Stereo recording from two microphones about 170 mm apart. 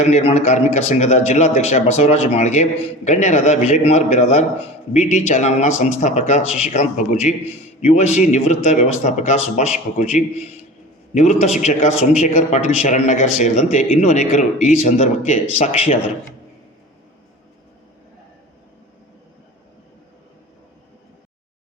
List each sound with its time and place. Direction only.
0.0 s a man's voice: 40° left (ahead or behind)